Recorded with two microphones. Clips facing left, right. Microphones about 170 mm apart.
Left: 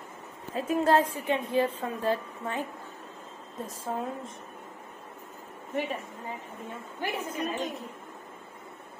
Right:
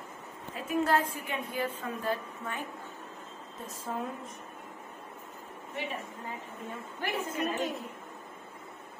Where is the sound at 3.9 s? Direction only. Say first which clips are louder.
Left 2 dB; 35° left (ahead or behind).